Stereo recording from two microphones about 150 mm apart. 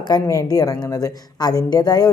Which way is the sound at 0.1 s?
25° left (ahead or behind).